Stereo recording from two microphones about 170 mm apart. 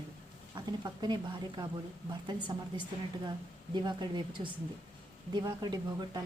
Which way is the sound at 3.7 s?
25° right (ahead or behind).